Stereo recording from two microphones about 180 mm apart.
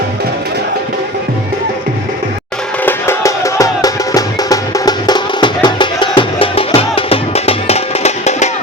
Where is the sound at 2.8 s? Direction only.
15° left (ahead or behind); by 8.5 s 40° left (ahead or behind).